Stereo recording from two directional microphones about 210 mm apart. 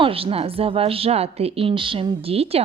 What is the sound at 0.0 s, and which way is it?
A woman's voice, 25° right (ahead or behind).